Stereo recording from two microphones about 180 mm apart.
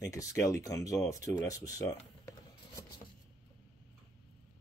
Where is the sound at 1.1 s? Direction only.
20° left (ahead or behind).